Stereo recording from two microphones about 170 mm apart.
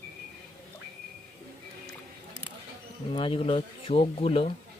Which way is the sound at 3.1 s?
30° left (ahead or behind).